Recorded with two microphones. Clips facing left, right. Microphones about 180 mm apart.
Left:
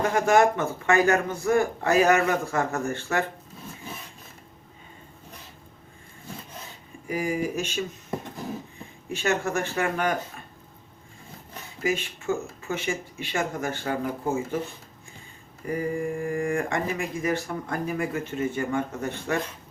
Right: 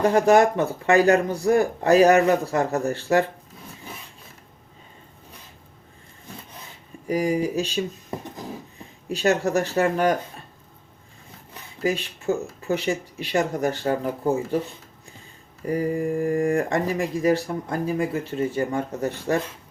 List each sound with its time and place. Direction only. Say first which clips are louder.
0.0 s speech: right 4 dB; 35° right (ahead or behind)
7.1 s speech: right 5 dB; 40° right (ahead or behind)
9.0 s speech: right 5 dB; 35° right (ahead or behind)
11.8 s speech: right 2 dB; 35° right (ahead or behind)
15.6 s speech: right 4 dB; 40° right (ahead or behind)